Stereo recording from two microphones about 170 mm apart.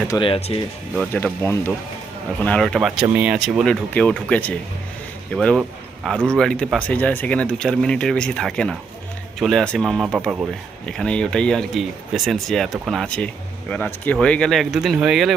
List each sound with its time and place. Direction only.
0.1 s speech: 30° left (ahead or behind)
1.1 s speech: 10° left (ahead or behind)